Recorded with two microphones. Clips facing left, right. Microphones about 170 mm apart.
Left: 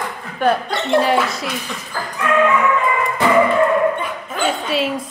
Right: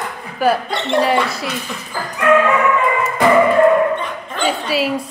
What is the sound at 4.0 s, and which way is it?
Dog, 5° left (ahead or behind).